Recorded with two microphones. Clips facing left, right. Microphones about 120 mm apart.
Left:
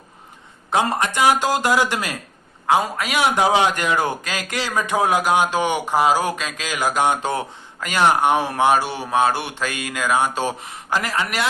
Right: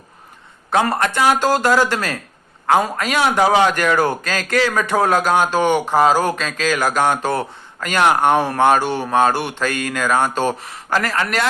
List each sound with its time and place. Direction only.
0.7 s a man's voice: 15° left (ahead or behind)